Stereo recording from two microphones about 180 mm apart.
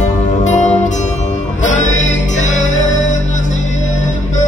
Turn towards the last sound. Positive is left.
turn(degrees=45)  # may be behind; listen again after turning